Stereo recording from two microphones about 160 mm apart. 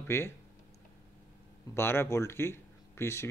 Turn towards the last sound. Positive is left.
turn(degrees=15)  # may be behind; listen again after turning